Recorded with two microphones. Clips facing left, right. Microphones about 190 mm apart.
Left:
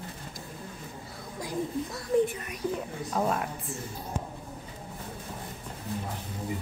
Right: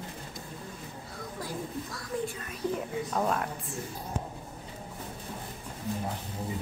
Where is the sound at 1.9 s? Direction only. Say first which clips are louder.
Left 11 dB; 20° left (ahead or behind).